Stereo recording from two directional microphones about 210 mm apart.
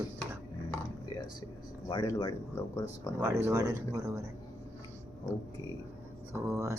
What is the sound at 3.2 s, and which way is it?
Speech, 15° right (ahead or behind).